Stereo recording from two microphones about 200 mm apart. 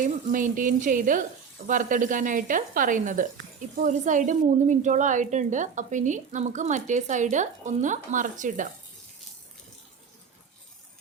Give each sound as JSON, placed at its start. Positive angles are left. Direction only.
{"t": 0.0, "sound": "a woman's voice", "side_deg": -40}